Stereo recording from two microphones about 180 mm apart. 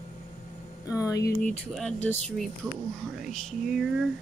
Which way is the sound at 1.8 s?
5° left (ahead or behind).